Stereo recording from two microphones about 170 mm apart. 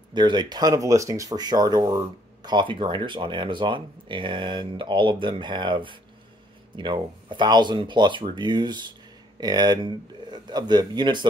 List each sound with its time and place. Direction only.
0.1 s speech: 25° right (ahead or behind)